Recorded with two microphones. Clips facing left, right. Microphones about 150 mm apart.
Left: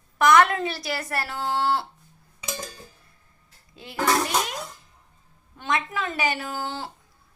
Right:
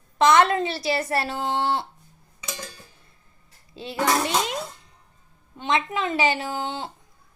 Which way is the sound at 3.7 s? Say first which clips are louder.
Even; 25° right (ahead or behind).